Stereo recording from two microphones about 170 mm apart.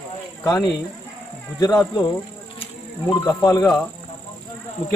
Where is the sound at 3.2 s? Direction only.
15° left (ahead or behind).